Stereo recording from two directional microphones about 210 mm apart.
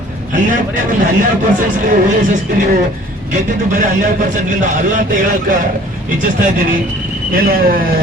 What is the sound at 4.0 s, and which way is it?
A man's voice, 35° right (ahead or behind).